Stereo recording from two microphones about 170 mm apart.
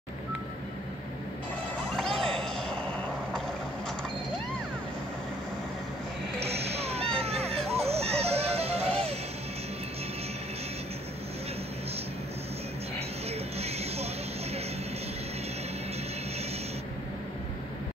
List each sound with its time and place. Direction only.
2.0 s a sound: 5° left (ahead or behind)
6.4 s music: 35° right (ahead or behind)
13.6 s music: 35° right (ahead or behind)